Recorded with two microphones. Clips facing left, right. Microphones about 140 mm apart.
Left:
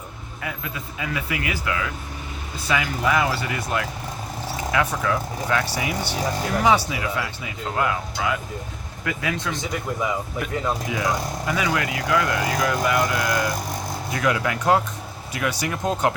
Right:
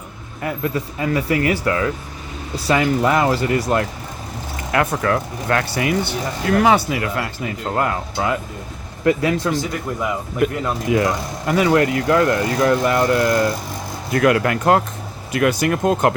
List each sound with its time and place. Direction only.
0.4 s speech: 45° right (ahead or behind)
4.7 s speech: 55° right (ahead or behind); by 9.5 s 35° right (ahead or behind)
10.4 s speech: 55° right (ahead or behind); by 13.5 s 40° right (ahead or behind)
14.1 s speech: 60° right (ahead or behind)